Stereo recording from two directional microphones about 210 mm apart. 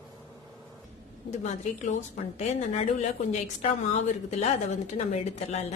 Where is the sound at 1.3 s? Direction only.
35° left (ahead or behind).